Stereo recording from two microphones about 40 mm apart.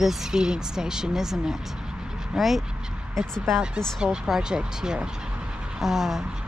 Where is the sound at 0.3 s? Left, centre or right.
Centre.